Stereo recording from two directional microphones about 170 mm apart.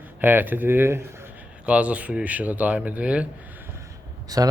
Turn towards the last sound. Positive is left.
turn(degrees=-20)  # may be behind; listen again after turning